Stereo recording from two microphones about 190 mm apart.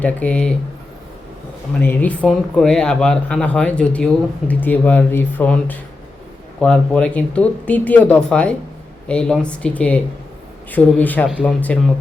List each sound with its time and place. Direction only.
0.0 s speech: 5° left (ahead or behind)
1.8 s speech: 10° left (ahead or behind)
11.3 s speech: 5° right (ahead or behind)